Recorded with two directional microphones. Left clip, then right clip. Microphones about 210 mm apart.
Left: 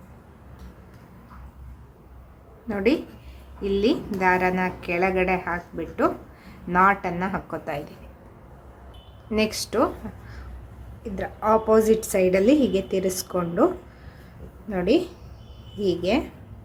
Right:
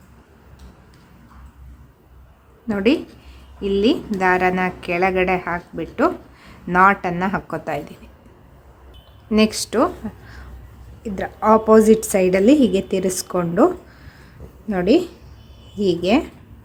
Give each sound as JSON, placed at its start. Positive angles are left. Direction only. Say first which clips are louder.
{"t": 2.6, "sound": "a woman's voice", "louder": "right 4 dB", "side_deg": -25}
{"t": 9.3, "sound": "a woman's voice", "louder": "right 5 dB", "side_deg": -20}
{"t": 14.7, "sound": "a woman's voice", "louder": "right 5 dB", "side_deg": -25}